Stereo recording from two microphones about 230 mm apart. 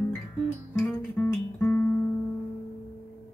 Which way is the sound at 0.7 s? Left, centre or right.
Centre.